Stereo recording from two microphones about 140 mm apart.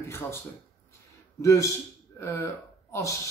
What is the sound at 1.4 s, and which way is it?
A man's voice, 20° left (ahead or behind).